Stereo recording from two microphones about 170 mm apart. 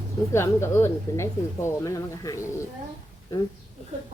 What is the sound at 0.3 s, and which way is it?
Speech, 15° left (ahead or behind).